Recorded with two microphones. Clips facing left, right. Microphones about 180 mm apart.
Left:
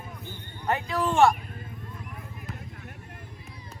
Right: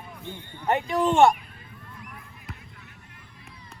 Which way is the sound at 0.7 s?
20° right (ahead or behind).